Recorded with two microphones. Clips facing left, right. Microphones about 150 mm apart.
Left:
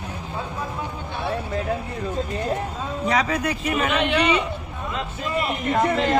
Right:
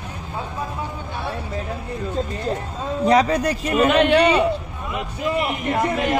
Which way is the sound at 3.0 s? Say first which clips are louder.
Right 6 dB; 35° right (ahead or behind).